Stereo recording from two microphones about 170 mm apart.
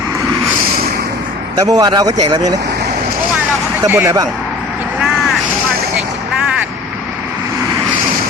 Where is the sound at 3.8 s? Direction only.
15° right (ahead or behind).